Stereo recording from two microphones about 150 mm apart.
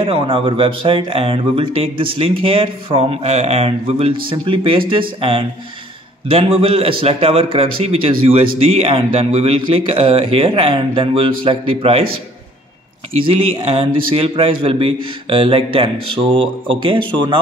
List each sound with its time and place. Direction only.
0.0 s speech: 35° right (ahead or behind)
13.7 s speech: 40° right (ahead or behind)